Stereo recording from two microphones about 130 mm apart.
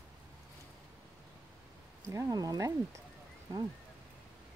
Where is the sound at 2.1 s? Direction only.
30° right (ahead or behind).